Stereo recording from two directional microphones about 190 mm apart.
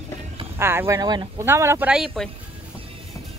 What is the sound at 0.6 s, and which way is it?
Speech, 10° right (ahead or behind).